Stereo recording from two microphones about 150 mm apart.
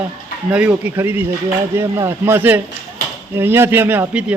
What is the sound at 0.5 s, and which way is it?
Speech, 10° right (ahead or behind).